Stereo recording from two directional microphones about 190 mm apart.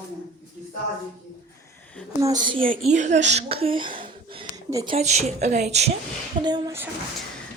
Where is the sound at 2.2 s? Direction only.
20° right (ahead or behind).